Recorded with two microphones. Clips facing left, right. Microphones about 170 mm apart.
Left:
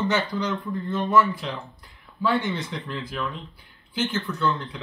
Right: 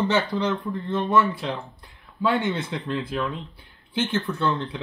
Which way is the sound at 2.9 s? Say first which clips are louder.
Right 6 dB; 25° right (ahead or behind).